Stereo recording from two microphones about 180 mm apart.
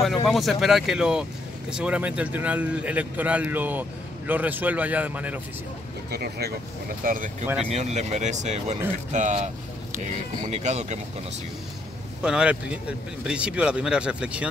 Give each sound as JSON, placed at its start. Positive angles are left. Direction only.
{"t": 0.0, "sound": "speech", "side_deg": 0}
{"t": 6.1, "sound": "speech", "side_deg": -65}
{"t": 7.0, "sound": "speech", "side_deg": -50}
{"t": 7.7, "sound": "speech", "side_deg": -40}
{"t": 12.2, "sound": "speech", "side_deg": -5}